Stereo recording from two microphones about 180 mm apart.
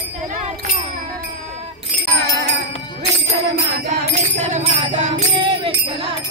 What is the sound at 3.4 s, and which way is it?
Music, 70° right (ahead or behind).